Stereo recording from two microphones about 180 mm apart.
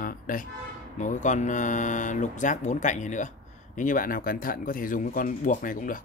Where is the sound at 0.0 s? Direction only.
50° left (ahead or behind).